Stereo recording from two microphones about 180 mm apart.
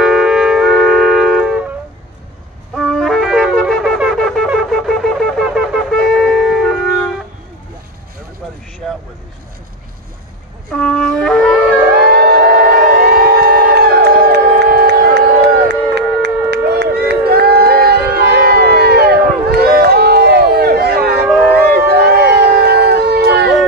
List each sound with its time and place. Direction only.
0.0 s shofar: centre (ahead or behind)
2.7 s music: centre (ahead or behind)
3.5 s shofar: centre (ahead or behind)
10.7 s wind instrument: 5° left (ahead or behind)
12.1 s civil defense siren: 60° right (ahead or behind)
21.6 s a sound: 60° right (ahead or behind)